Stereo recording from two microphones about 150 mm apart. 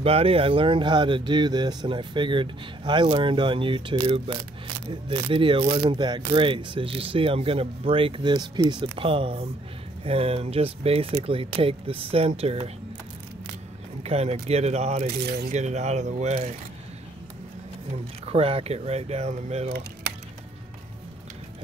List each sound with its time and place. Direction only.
0.0 s speech: 40° right (ahead or behind)
14.0 s speech: 40° right (ahead or behind)
15.0 s speech: 90° right
15.5 s speech: 50° right (ahead or behind)
18.2 s speech: 40° right (ahead or behind)